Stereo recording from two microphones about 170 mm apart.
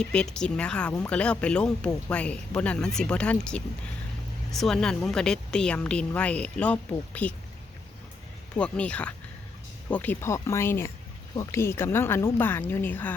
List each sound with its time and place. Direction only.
0.0 s speech: 5° left (ahead or behind)
8.5 s speech: 5° left (ahead or behind)